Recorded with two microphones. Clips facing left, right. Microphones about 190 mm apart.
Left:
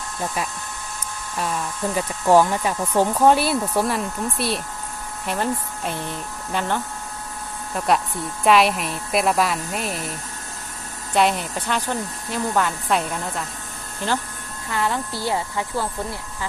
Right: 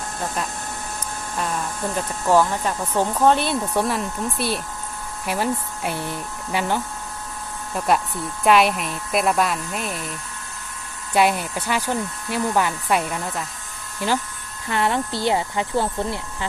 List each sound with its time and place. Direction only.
2.0 s speech: 10° left (ahead or behind); by 6.7 s 10° right (ahead or behind)
7.8 s a woman's voice: centre (ahead or behind)
11.1 s a woman's voice: 5° right (ahead or behind)
14.7 s speech: 20° right (ahead or behind)